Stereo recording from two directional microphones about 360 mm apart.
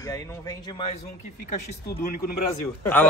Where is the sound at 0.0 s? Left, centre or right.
Centre; by 2.3 s left.